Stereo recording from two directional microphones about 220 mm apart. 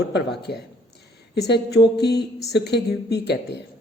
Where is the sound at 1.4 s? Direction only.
50° left (ahead or behind).